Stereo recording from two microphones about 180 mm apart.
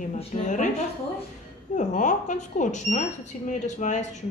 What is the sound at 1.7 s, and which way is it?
Speech, 45° left (ahead or behind).